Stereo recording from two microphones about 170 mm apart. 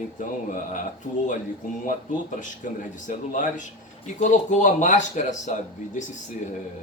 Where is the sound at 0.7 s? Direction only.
50° left (ahead or behind).